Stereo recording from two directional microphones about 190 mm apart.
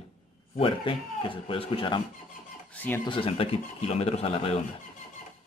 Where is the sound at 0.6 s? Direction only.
25° left (ahead or behind).